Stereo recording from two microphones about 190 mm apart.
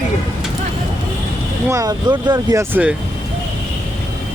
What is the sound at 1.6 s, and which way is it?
Speech, 15° right (ahead or behind).